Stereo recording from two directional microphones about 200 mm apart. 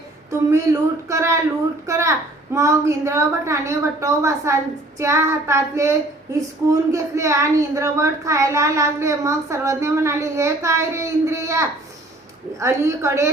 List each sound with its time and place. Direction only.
0.3 s a woman's voice: 15° right (ahead or behind)